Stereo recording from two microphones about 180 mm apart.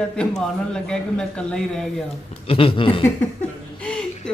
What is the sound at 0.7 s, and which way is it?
A man's voice, 5° left (ahead or behind).